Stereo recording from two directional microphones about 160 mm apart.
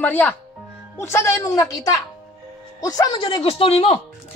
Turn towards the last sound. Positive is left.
turn(degrees=40)  # may be behind; listen again after turning